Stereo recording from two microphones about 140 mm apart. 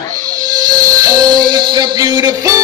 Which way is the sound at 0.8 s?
25° right (ahead or behind).